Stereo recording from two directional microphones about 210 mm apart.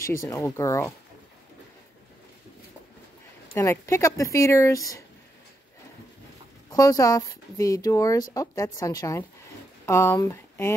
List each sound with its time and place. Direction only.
0.2 s speech: 15° left (ahead or behind)
3.5 s speech: 15° left (ahead or behind)
6.7 s speech: 15° left (ahead or behind)